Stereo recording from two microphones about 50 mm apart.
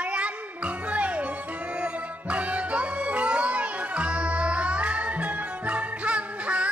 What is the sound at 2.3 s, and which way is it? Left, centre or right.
Music, right.